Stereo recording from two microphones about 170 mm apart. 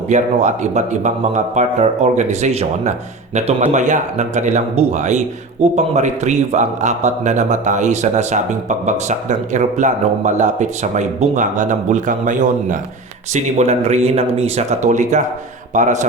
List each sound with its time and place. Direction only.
0.1 s speech: 45° right (ahead or behind)